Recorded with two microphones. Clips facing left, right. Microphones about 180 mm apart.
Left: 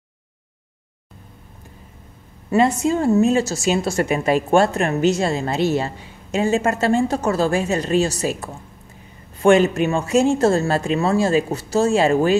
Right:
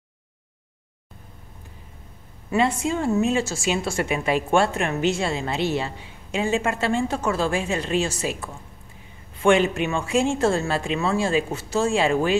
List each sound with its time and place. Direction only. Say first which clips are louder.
2.5 s speech: left 5 dB; 40° left (ahead or behind)